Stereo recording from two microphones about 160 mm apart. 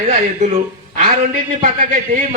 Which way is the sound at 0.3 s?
50° right (ahead or behind).